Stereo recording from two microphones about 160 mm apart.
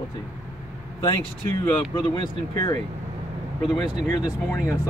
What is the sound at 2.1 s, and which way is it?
Speech, 30° left (ahead or behind).